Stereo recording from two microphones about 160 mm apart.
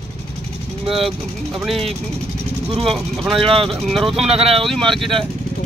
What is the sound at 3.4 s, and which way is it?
Speech, 35° right (ahead or behind).